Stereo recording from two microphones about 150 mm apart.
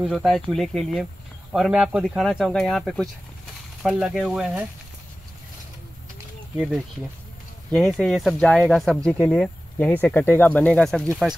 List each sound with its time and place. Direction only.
0.0 s speech: centre (ahead or behind)
7.7 s speech: centre (ahead or behind)